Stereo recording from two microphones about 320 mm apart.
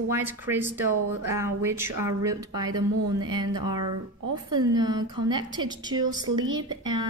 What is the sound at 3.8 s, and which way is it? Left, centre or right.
Speech, right.